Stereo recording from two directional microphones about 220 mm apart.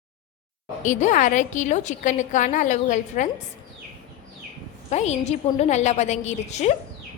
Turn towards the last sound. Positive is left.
turn(degrees=30)  # may be behind; listen again after turning